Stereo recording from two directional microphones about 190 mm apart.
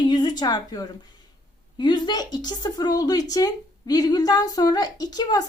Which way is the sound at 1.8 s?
25° left (ahead or behind).